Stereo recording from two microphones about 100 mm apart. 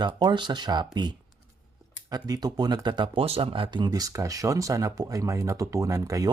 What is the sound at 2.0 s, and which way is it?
Speech, 40° right (ahead or behind).